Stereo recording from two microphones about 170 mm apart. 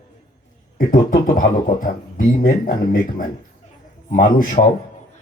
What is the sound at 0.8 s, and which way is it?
Speech, 55° left (ahead or behind).